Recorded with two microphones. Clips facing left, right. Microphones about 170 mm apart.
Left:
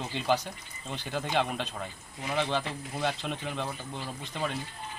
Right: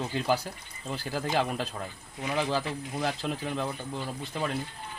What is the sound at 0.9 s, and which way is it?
Speech, 5° right (ahead or behind).